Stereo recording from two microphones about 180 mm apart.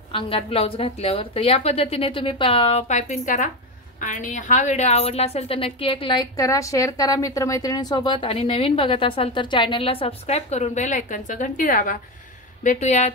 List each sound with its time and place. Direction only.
0.1 s a woman's voice: 30° left (ahead or behind); by 12.0 s 50° left (ahead or behind)
12.6 s a woman's voice: 40° left (ahead or behind)